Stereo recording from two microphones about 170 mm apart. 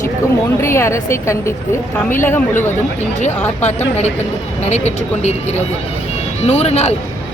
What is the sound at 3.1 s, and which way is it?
Speech, 45° left (ahead or behind).